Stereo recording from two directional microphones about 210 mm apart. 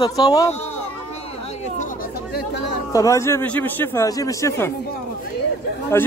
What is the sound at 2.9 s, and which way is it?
A man's voice, 15° left (ahead or behind).